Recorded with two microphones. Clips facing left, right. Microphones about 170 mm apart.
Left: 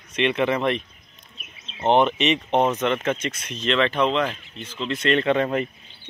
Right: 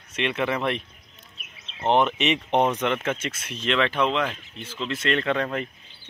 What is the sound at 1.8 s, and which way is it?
Speech, centre (ahead or behind).